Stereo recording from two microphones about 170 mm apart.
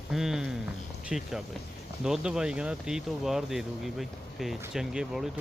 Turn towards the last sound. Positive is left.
turn(degrees=-5)  # may be behind; listen again after turning